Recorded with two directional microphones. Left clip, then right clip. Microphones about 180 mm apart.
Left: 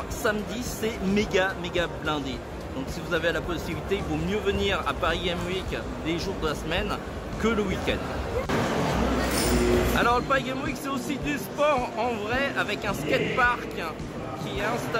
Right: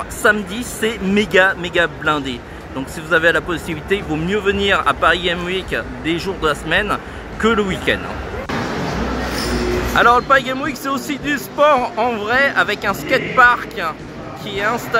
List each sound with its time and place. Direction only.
0.2 s speech: 20° right (ahead or behind)
9.9 s speech: 25° right (ahead or behind)